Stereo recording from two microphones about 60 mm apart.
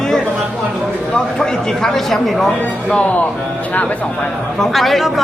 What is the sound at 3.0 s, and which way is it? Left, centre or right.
Speech, left.